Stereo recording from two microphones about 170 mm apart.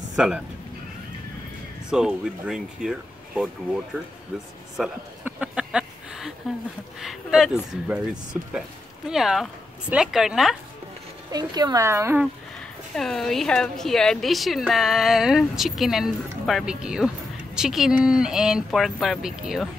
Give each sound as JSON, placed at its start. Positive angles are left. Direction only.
{"t": 0.1, "sound": "speech", "side_deg": -5}
{"t": 1.9, "sound": "a woman's voice", "side_deg": -5}
{"t": 4.7, "sound": "a sound", "side_deg": -5}
{"t": 7.0, "sound": "a woman's voice", "side_deg": 0}
{"t": 11.3, "sound": "speech", "side_deg": -25}
{"t": 12.9, "sound": "a woman's voice", "side_deg": 0}